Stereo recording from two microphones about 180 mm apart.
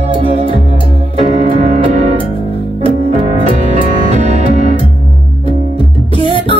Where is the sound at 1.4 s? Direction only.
40° right (ahead or behind).